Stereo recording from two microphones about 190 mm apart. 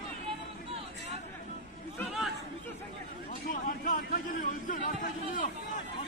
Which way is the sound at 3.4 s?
45° left (ahead or behind).